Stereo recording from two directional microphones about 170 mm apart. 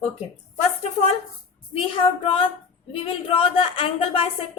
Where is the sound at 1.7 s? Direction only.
35° left (ahead or behind).